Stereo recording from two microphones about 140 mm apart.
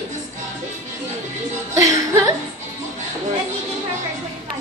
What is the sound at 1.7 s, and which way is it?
Music, 20° right (ahead or behind).